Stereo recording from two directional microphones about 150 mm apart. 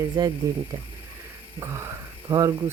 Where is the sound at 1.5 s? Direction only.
20° right (ahead or behind).